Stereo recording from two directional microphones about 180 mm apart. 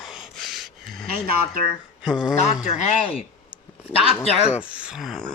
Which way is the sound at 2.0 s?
5° right (ahead or behind).